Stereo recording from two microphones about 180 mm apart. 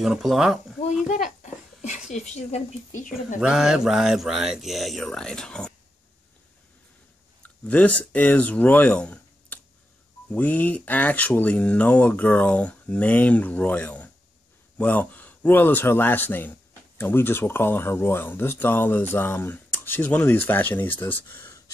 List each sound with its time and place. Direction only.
0.0 s speech: centre (ahead or behind)
1.4 s a sound: 40° left (ahead or behind)
2.1 s speech: 40° left (ahead or behind)
3.3 s speech: 5° right (ahead or behind)
7.4 s speech: 10° left (ahead or behind)